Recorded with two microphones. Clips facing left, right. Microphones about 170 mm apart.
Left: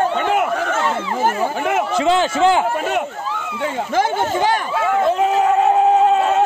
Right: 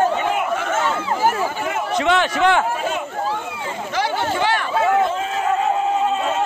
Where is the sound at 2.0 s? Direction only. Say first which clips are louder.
Left 2 dB; 30° left (ahead or behind).